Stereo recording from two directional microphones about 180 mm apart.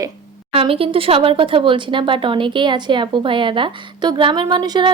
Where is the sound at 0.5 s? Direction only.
30° right (ahead or behind).